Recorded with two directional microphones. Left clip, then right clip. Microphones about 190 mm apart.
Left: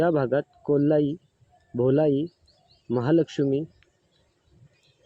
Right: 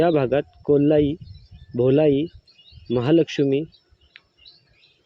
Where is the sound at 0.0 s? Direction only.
10° right (ahead or behind).